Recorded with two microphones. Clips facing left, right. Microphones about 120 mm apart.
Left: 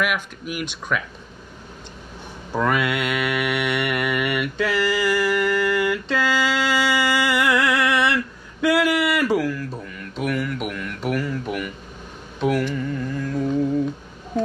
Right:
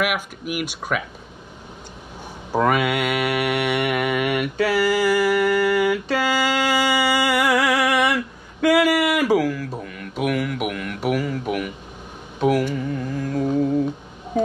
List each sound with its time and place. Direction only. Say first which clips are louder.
0.0 s speech: right 1 dB; 10° right (ahead or behind)
2.5 s speech: right 2 dB; 10° right (ahead or behind)
3.6 s a sound: right 2 dB; 10° right (ahead or behind)
4.6 s speech: right 3 dB; 10° right (ahead or behind)
5.1 s mantra: right 2 dB; 10° right (ahead or behind)
6.9 s a sound: right 1 dB; 10° right (ahead or behind)
7.4 s mantra: right 1 dB; 10° right (ahead or behind)
8.7 s a sound: right 2 dB; 10° right (ahead or behind)
12.4 s music: right 2 dB; 10° right (ahead or behind)